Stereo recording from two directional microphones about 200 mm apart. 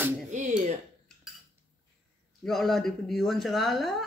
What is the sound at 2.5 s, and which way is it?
Speech, centre (ahead or behind).